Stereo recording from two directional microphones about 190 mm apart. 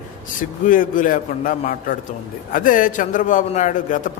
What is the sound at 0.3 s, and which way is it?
A man's voice, 45° left (ahead or behind).